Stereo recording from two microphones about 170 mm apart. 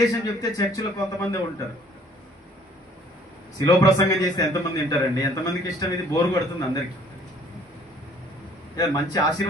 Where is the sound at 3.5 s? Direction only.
20° left (ahead or behind).